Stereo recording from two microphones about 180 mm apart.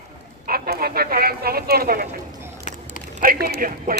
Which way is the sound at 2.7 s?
40° left (ahead or behind).